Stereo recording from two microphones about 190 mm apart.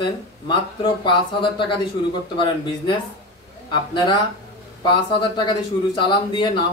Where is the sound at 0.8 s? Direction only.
25° left (ahead or behind).